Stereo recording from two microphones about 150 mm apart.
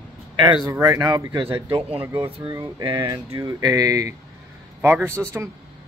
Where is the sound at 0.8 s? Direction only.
25° right (ahead or behind).